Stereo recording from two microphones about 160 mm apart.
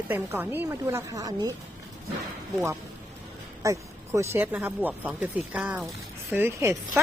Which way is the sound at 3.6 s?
20° right (ahead or behind).